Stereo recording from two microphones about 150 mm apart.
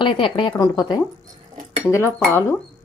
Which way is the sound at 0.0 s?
35° left (ahead or behind).